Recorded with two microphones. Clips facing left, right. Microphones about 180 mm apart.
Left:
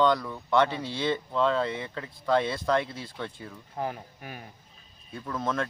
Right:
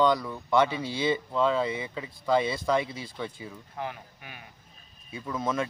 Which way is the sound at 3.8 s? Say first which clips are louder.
Left 4 dB; 40° left (ahead or behind).